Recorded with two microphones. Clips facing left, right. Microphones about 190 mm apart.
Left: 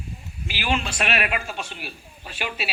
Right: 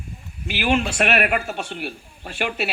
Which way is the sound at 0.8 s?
70° right (ahead or behind).